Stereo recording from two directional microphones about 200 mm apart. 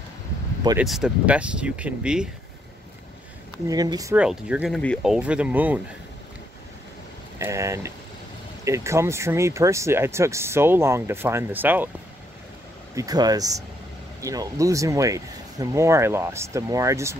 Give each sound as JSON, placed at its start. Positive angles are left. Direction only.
{"t": 0.7, "sound": "speech", "side_deg": 0}
{"t": 3.6, "sound": "speech", "side_deg": -20}
{"t": 4.2, "sound": "speech", "side_deg": -5}
{"t": 7.3, "sound": "speech", "side_deg": -15}
{"t": 12.9, "sound": "speech", "side_deg": -20}